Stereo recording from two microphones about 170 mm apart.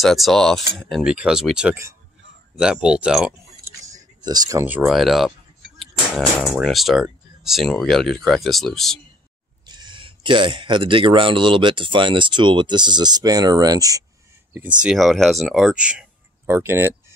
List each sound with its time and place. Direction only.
0.0 s speech: centre (ahead or behind)
3.9 s speech: 25° right (ahead or behind); by 9.0 s centre (ahead or behind)
9.7 s speech: 25° right (ahead or behind)
14.8 s speech: centre (ahead or behind)